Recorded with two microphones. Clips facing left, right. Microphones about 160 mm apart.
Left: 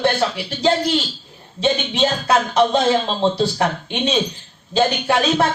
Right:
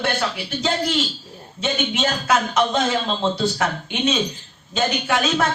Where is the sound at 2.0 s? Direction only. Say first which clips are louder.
Left 2 dB; 30° left (ahead or behind).